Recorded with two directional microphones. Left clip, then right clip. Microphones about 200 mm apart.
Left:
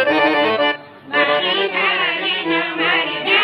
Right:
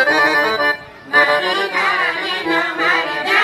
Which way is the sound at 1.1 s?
45° right (ahead or behind).